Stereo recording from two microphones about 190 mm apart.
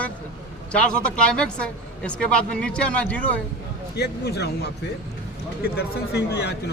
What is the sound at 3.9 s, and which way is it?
A man's voice, 60° left (ahead or behind).